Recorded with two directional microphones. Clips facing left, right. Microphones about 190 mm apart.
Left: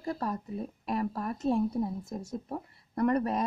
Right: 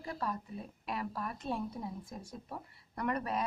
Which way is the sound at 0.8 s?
45° left (ahead or behind).